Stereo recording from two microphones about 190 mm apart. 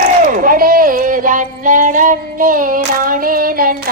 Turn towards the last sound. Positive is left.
turn(degrees=-50)  # may be behind; listen again after turning